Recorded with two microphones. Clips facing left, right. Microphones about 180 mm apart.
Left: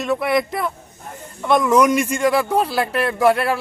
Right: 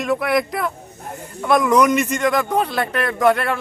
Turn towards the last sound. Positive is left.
turn(degrees=5)  # may be behind; listen again after turning